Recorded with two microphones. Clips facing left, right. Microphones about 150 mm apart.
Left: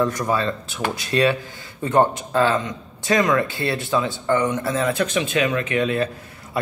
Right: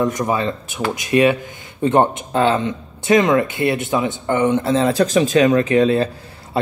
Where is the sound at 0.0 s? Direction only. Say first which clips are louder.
Right 2 dB; 20° right (ahead or behind).